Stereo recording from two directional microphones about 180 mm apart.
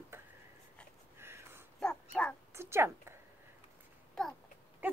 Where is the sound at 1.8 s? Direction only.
5° left (ahead or behind).